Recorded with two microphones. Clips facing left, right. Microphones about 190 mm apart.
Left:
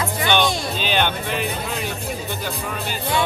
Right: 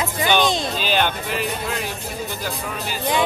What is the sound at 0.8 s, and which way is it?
Speech, 5° right (ahead or behind).